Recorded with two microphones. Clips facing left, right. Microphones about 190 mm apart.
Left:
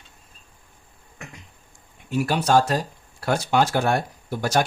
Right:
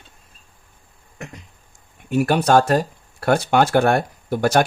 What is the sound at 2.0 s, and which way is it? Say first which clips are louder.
Speech: right 5 dB; 55° right (ahead or behind).